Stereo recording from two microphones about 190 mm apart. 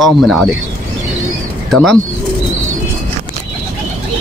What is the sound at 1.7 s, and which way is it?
Speech, centre (ahead or behind).